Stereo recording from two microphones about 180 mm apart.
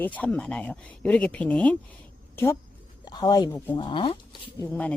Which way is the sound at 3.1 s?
20° left (ahead or behind).